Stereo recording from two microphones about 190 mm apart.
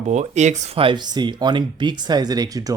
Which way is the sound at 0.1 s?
35° right (ahead or behind).